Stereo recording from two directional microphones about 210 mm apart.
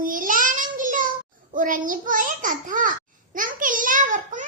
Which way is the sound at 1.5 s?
40° right (ahead or behind).